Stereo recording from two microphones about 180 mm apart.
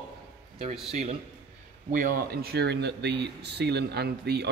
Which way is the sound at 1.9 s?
50° right (ahead or behind).